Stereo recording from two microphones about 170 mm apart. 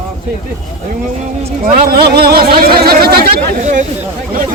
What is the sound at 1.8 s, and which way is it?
Speech, 65° right (ahead or behind).